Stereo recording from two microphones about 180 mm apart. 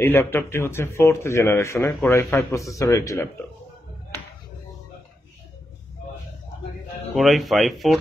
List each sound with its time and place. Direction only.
0.0 s speech: 10° left (ahead or behind)
7.2 s speech: centre (ahead or behind)